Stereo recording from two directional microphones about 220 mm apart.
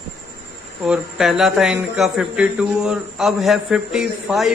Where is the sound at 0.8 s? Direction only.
5° right (ahead or behind).